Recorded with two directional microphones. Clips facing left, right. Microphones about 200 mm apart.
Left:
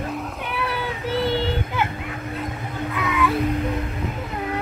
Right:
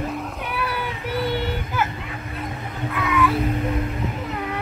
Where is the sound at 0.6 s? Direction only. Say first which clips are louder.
Left 3 dB; 25° left (ahead or behind).